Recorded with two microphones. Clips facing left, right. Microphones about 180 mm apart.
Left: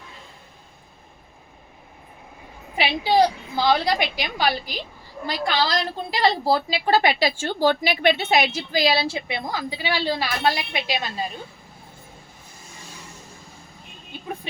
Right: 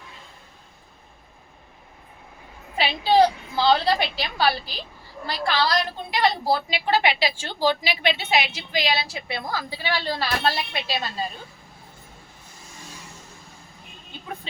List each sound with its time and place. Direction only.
2.7 s a woman's voice: 15° left (ahead or behind)